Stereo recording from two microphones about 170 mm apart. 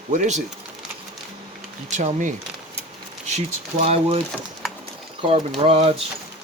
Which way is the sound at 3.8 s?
35° right (ahead or behind).